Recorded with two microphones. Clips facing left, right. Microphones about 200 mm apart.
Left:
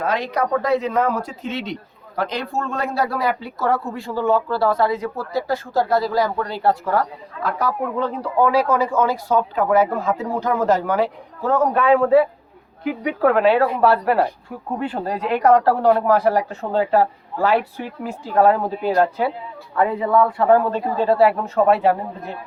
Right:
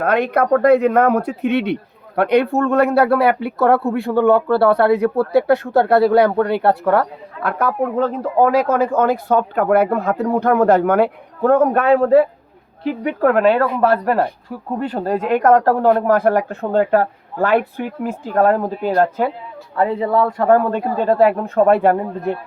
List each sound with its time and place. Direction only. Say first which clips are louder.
0.0 s speech: right 5 dB; 60° right (ahead or behind)
7.9 s speech: right 4 dB; 45° right (ahead or behind)
19.7 s speech: right 1 dB; 35° right (ahead or behind); by 22.4 s 55° right (ahead or behind)